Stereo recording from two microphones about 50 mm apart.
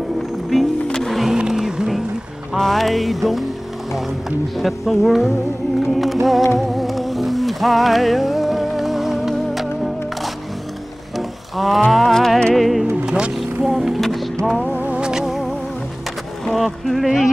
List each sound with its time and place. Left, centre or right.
1.0 s music: centre
1.3 s vehicle: centre
2.5 s music: centre
4.6 s speech: centre
6.8 s music: centre
12.5 s speech: centre
13.0 s vehicle: centre
13.6 s music: centre
15.0 s music: centre
16.4 s speech: centre